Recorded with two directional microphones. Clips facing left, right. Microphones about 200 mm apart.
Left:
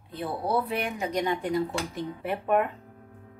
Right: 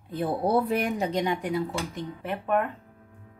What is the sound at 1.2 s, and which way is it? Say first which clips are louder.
Speech: even; 5° right (ahead or behind).